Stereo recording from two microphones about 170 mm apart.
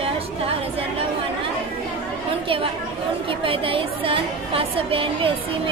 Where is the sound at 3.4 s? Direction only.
30° right (ahead or behind).